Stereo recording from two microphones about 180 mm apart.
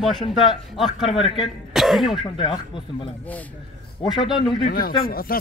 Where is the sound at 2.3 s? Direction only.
30° left (ahead or behind).